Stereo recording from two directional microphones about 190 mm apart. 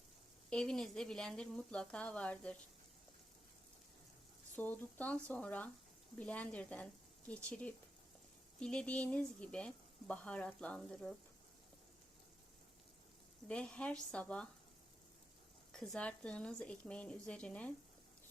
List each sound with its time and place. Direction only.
0.5 s speech: 5° left (ahead or behind)
4.5 s speech: 10° left (ahead or behind)
13.5 s speech: 5° left (ahead or behind)
15.7 s speech: 5° left (ahead or behind)